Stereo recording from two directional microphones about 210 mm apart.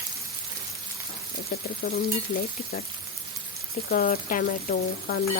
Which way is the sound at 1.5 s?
40° left (ahead or behind).